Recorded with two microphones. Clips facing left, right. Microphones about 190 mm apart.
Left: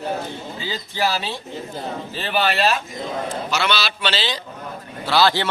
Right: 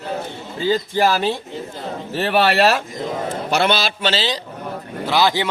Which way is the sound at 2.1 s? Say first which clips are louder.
Right 6 dB; 70° right (ahead or behind).